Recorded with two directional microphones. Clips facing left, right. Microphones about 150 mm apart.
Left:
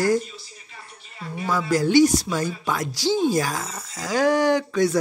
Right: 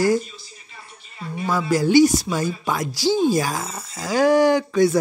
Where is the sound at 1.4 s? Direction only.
10° right (ahead or behind).